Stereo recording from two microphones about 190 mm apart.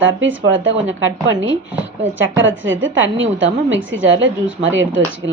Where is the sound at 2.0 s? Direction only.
80° right.